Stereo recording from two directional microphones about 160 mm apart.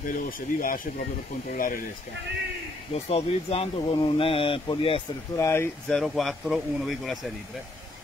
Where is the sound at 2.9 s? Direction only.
40° left (ahead or behind).